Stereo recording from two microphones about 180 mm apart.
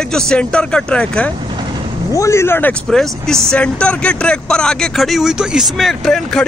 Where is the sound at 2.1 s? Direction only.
15° left (ahead or behind).